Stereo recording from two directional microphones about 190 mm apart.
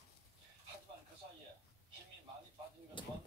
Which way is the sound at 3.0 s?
25° left (ahead or behind).